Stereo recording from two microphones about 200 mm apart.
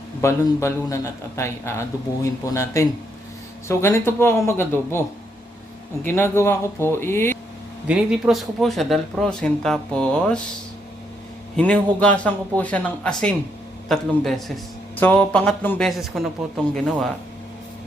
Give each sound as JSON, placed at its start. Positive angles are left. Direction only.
{"t": 0.2, "sound": "speech", "side_deg": 15}
{"t": 7.9, "sound": "speech", "side_deg": 0}
{"t": 11.5, "sound": "speech", "side_deg": 5}